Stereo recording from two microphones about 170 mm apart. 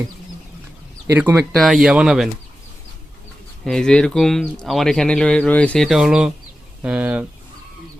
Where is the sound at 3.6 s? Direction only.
5° left (ahead or behind).